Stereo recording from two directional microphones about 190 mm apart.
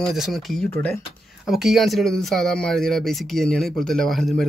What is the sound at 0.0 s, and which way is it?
Speech, centre (ahead or behind).